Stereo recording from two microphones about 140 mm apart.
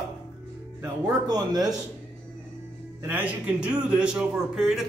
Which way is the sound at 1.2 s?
30° right (ahead or behind).